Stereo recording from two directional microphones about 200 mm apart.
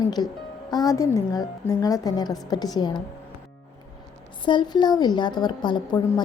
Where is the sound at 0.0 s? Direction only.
20° left (ahead or behind).